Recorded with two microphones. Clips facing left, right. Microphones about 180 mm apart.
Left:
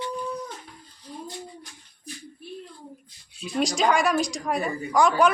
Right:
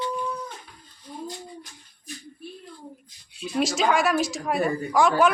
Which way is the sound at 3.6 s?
Centre (ahead or behind).